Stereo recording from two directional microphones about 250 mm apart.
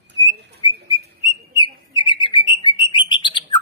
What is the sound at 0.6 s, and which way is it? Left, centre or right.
Whistle, centre.